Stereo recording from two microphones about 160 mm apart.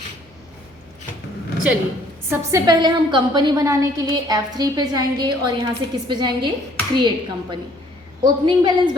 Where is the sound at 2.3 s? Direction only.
20° right (ahead or behind).